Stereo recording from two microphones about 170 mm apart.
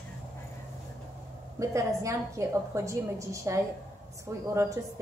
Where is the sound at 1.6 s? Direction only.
15° right (ahead or behind).